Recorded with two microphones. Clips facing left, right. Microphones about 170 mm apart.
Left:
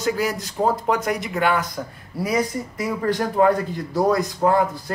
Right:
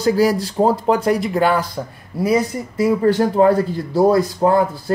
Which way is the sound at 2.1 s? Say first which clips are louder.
Right 5 dB; 20° right (ahead or behind).